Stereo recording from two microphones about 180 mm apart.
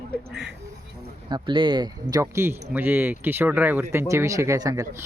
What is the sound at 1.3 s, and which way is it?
Speech, 25° right (ahead or behind).